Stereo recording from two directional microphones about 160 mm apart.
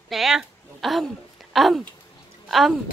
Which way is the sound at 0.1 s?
Centre (ahead or behind).